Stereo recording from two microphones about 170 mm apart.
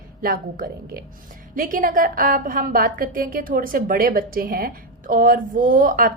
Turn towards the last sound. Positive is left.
turn(degrees=-55)  # may be behind; listen again after turning